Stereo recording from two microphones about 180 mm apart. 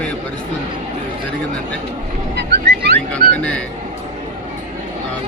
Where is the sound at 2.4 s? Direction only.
70° right (ahead or behind).